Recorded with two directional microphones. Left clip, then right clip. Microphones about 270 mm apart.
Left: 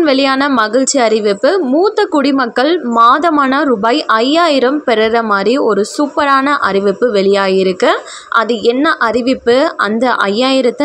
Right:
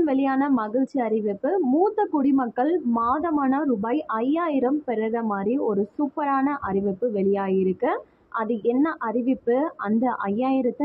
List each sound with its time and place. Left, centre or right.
0.0 s a woman's voice: centre